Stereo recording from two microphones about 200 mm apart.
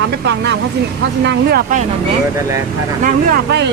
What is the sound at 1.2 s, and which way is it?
Speech, 55° right (ahead or behind).